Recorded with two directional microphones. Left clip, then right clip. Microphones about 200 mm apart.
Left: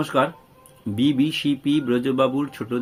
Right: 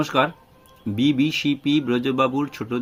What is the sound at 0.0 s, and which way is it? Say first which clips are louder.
Speech: right 1 dB; 20° right (ahead or behind).